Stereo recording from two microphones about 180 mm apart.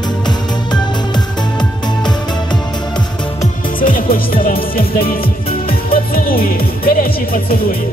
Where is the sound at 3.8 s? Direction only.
50° left (ahead or behind).